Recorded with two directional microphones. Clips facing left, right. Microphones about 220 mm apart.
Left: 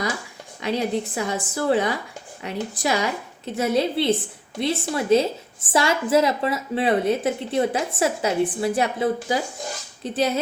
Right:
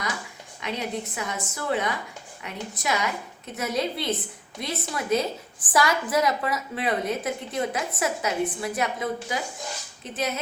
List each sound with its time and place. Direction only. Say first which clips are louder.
0.6 s a woman's voice: left 7 dB; 30° left (ahead or behind)